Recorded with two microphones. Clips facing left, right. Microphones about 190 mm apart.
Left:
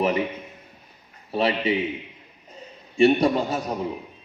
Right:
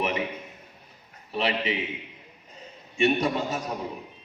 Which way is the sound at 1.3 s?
30° left (ahead or behind).